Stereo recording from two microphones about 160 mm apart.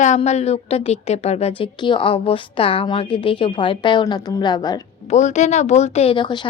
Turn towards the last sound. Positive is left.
turn(degrees=30)  # may be behind; listen again after turning